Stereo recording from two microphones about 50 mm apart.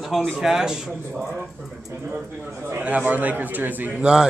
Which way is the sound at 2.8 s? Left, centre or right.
Right.